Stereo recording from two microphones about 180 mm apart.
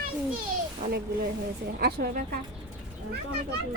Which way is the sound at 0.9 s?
65° right (ahead or behind).